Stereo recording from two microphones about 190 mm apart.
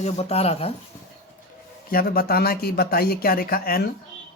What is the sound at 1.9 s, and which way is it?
Speech, 50° left (ahead or behind).